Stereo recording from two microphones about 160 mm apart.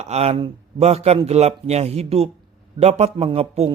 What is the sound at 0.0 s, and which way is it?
Speech, 40° right (ahead or behind).